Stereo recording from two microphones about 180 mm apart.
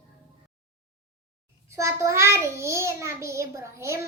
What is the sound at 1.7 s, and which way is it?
A child's voice, 15° right (ahead or behind).